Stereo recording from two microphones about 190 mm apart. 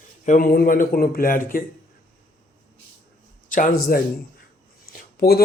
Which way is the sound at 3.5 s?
45° left (ahead or behind).